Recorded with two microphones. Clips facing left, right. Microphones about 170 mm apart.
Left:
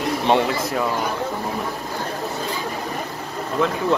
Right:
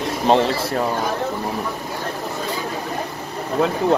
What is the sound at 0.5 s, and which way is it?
Speech, 30° right (ahead or behind).